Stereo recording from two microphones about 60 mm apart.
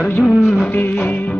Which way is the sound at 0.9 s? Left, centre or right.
Left.